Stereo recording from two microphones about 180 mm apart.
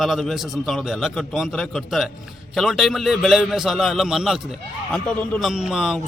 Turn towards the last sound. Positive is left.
turn(degrees=0)  # may be behind; listen again after turning